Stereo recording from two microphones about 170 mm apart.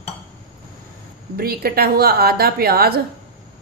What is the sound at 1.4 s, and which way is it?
A woman's voice, 65° right (ahead or behind).